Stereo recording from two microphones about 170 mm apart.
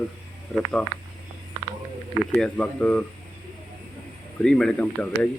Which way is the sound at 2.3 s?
5° left (ahead or behind).